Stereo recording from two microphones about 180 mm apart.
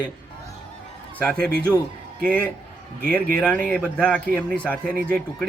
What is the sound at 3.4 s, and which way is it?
Speech, 5° left (ahead or behind).